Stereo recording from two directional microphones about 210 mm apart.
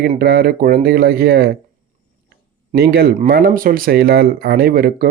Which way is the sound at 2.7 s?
50° right (ahead or behind).